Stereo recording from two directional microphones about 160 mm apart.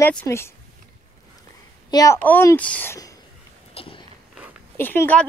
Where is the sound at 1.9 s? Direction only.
20° left (ahead or behind).